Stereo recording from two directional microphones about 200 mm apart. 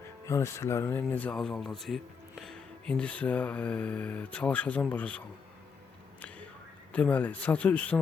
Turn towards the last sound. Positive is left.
turn(degrees=5)  # may be behind; listen again after turning